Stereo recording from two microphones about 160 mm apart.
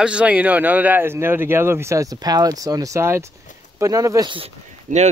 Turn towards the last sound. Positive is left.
turn(degrees=-50)  # may be behind; listen again after turning